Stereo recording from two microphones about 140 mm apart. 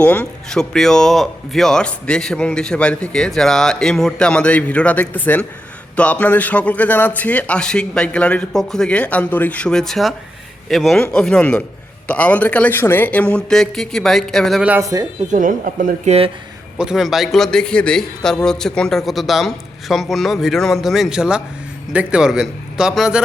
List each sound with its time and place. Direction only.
0.0 s a man's voice: 10° left (ahead or behind)
14.9 s speech: 25° right (ahead or behind)
15.3 s speech: 70° right (ahead or behind)
16.7 s speech: 5° right (ahead or behind)